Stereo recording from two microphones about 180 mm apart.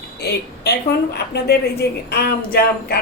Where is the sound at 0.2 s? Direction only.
65° left (ahead or behind).